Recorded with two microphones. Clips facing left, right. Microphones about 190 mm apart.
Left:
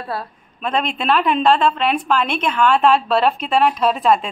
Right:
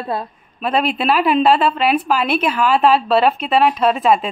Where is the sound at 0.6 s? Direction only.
5° right (ahead or behind).